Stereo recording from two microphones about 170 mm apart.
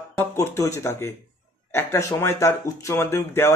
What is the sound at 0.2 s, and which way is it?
A man's voice, 15° left (ahead or behind).